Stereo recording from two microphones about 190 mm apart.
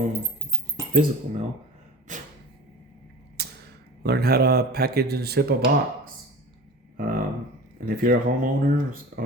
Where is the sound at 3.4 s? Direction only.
60° right (ahead or behind).